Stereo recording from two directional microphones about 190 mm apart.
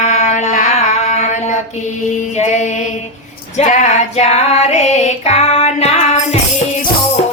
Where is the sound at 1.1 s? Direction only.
35° left (ahead or behind).